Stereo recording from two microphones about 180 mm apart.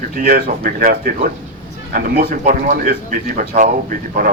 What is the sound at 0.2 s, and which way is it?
A man's voice, 55° right (ahead or behind).